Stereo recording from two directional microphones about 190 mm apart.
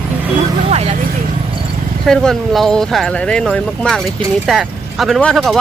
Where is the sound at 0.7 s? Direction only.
35° right (ahead or behind).